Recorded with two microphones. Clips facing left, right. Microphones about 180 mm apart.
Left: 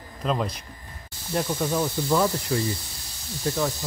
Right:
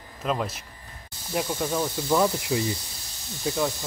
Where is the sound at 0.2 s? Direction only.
5° right (ahead or behind).